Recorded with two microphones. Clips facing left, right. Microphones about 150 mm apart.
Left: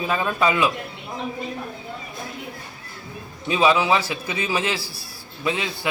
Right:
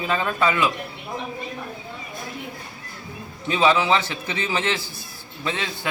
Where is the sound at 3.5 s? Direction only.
15° left (ahead or behind).